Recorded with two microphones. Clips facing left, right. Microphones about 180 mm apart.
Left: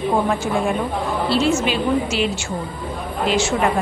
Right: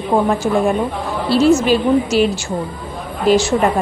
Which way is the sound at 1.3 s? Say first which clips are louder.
Right 8 dB; 35° right (ahead or behind).